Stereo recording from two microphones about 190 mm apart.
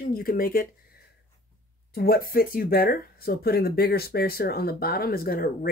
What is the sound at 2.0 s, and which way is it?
Speech, 50° left (ahead or behind).